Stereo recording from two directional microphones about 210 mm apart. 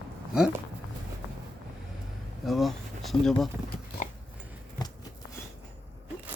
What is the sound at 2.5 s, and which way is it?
Speech, centre (ahead or behind).